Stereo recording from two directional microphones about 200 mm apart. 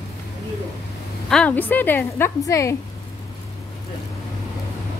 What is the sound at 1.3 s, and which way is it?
A woman's voice, 5° left (ahead or behind).